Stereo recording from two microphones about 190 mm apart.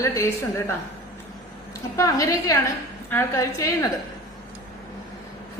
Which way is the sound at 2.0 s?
15° left (ahead or behind).